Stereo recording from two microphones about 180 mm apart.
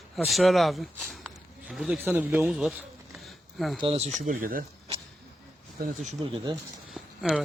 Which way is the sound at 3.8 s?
35° right (ahead or behind).